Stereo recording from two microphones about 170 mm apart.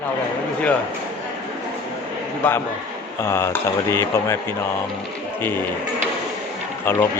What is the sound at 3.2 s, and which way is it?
Speech, 15° left (ahead or behind).